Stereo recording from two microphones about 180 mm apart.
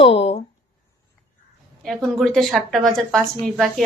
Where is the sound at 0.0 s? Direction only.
30° left (ahead or behind).